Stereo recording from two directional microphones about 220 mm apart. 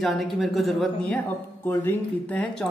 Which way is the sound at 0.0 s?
Centre (ahead or behind).